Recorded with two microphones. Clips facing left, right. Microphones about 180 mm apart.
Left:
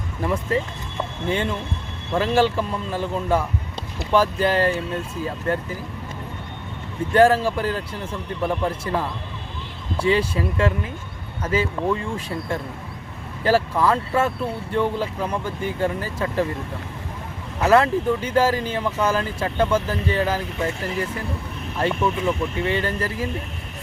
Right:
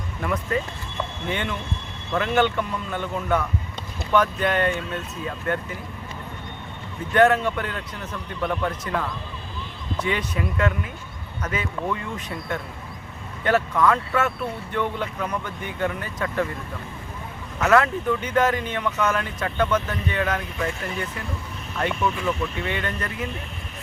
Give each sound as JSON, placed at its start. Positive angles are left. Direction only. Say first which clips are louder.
{"t": 0.2, "sound": "speech", "louder": "left 3 dB", "side_deg": 30}
{"t": 7.1, "sound": "speech", "louder": "left 2 dB", "side_deg": 30}
{"t": 17.6, "sound": "speech", "louder": "left 2 dB", "side_deg": 30}